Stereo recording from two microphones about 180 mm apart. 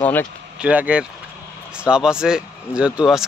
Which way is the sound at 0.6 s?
10° right (ahead or behind).